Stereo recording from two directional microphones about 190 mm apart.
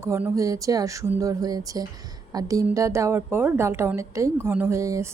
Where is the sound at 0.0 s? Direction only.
15° right (ahead or behind).